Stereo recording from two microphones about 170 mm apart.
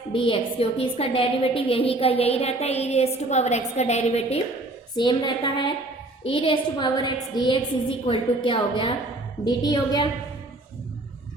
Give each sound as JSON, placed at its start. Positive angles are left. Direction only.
{"t": 0.1, "sound": "a woman's voice", "side_deg": 30}
{"t": 4.9, "sound": "a woman's voice", "side_deg": 25}